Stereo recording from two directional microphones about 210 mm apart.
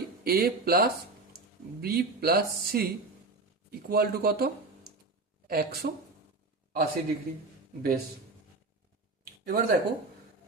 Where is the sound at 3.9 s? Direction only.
45° right (ahead or behind).